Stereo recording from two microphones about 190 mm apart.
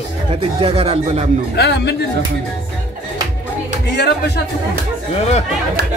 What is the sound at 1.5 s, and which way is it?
Speech, 65° left (ahead or behind).